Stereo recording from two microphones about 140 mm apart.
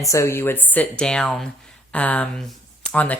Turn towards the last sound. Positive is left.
turn(degrees=10)  # may be behind; listen again after turning